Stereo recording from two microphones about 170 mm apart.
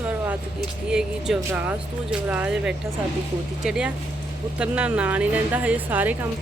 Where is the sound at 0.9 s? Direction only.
5° right (ahead or behind).